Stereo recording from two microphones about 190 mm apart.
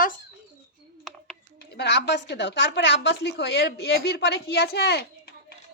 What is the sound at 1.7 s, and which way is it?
Speech, 60° left (ahead or behind).